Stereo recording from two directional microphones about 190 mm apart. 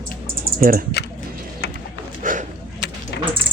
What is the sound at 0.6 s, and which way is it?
Speech, 45° right (ahead or behind).